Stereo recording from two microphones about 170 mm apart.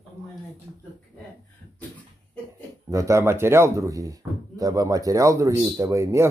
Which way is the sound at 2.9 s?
20° right (ahead or behind).